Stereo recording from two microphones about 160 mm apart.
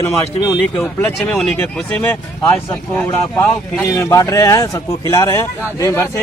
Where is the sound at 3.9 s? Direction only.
20° left (ahead or behind).